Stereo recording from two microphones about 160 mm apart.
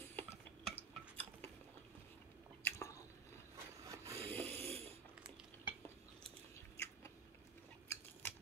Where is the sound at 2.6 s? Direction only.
15° left (ahead or behind).